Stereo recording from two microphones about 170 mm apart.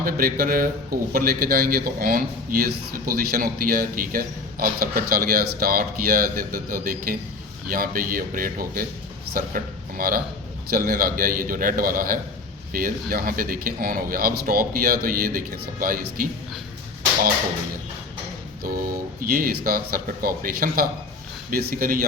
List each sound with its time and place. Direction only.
0.0 s a man's voice: 55° right (ahead or behind)
18.6 s a man's voice: 60° right (ahead or behind)